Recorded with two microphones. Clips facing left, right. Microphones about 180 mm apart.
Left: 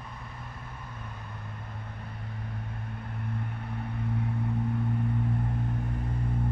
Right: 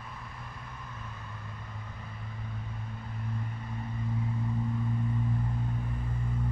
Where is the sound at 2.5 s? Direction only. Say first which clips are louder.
Left 2 dB; 60° left (ahead or behind).